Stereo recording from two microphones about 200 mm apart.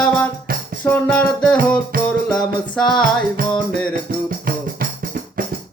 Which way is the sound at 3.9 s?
50° right (ahead or behind).